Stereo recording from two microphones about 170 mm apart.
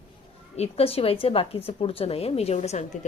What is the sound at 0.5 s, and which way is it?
Speech, 35° left (ahead or behind).